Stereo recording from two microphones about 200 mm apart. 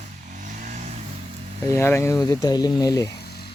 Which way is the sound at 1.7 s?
10° left (ahead or behind).